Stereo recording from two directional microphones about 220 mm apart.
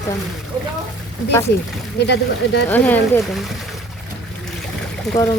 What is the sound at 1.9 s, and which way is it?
Speech, 50° left (ahead or behind).